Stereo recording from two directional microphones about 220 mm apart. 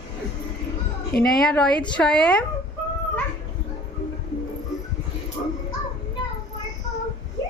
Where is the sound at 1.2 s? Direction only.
Centre (ahead or behind).